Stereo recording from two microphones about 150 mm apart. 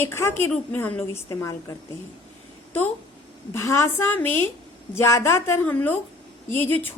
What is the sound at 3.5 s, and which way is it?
A woman's voice, 20° left (ahead or behind).